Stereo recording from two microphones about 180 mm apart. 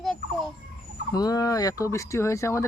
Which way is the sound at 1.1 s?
20° left (ahead or behind).